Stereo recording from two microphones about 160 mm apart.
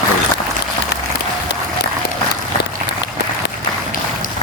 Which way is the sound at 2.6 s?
90° left.